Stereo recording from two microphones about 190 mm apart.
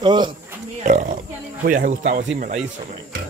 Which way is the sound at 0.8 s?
40° right (ahead or behind).